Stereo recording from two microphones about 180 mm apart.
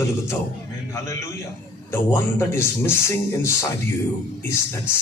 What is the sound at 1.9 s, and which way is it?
A man's voice, 15° left (ahead or behind).